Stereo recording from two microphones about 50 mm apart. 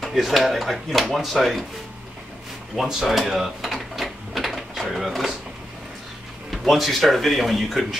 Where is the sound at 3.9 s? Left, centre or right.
Centre.